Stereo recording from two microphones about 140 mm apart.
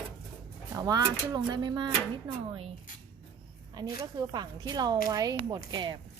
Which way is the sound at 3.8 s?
30° right (ahead or behind).